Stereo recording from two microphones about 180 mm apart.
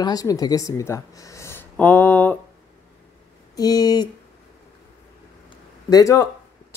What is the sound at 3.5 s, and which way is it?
Speech, 20° left (ahead or behind).